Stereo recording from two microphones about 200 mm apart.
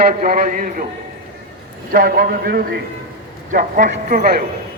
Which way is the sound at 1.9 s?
50° right (ahead or behind).